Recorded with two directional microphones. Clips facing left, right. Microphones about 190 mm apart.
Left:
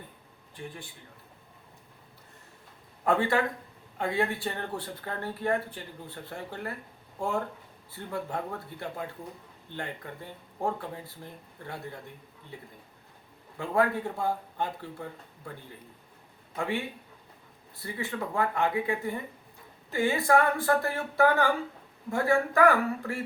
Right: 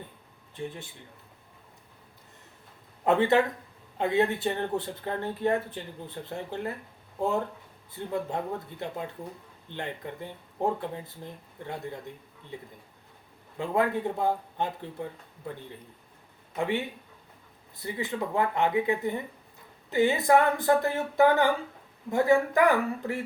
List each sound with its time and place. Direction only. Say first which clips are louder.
0.5 s speech: right 5 dB; 25° right (ahead or behind)
3.0 s speech: right 3 dB; 20° right (ahead or behind)
13.6 s speech: even; 20° right (ahead or behind)
16.6 s speech: right 3 dB; 20° right (ahead or behind)
17.8 s speech: right 3 dB; 20° right (ahead or behind)